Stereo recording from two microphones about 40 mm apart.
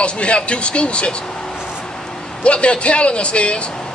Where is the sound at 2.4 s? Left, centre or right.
Left.